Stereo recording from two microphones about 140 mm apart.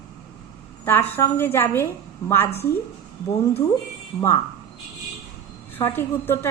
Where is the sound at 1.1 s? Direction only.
15° left (ahead or behind).